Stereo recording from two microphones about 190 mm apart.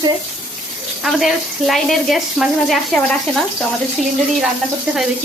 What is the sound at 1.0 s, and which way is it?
Speech, centre (ahead or behind).